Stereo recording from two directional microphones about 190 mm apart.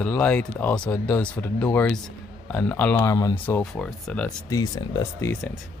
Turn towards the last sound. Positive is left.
turn(degrees=20)  # may be behind; listen again after turning